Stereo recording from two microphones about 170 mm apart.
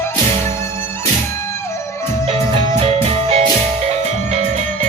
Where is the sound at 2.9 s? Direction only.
35° right (ahead or behind).